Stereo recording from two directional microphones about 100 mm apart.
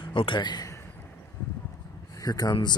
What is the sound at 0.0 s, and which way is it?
Speech, 60° left (ahead or behind).